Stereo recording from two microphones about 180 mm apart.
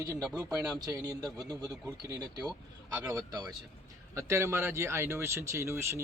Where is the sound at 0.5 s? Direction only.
20° right (ahead or behind).